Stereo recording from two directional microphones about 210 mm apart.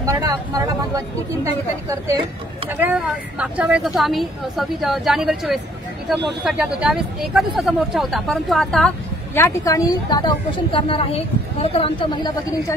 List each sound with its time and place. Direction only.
0.0 s speech: 15° right (ahead or behind); by 12.7 s 20° left (ahead or behind)